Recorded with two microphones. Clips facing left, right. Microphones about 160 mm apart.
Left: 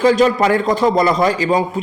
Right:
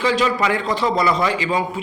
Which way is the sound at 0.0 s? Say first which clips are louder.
Left 6 dB; 45° left (ahead or behind).